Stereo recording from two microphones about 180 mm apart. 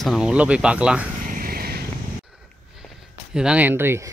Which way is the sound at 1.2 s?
50° right (ahead or behind).